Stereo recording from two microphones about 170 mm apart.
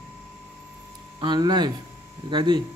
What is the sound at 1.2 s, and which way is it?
A man's voice, 25° right (ahead or behind).